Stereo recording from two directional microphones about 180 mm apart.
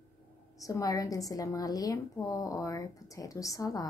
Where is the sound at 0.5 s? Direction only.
20° left (ahead or behind).